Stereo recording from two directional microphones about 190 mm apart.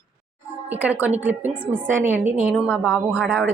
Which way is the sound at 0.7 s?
10° right (ahead or behind).